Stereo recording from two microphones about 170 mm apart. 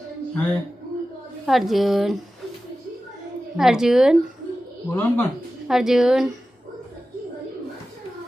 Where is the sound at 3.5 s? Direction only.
5° right (ahead or behind).